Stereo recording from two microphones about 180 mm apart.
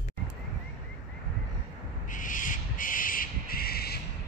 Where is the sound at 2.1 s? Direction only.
45° left (ahead or behind).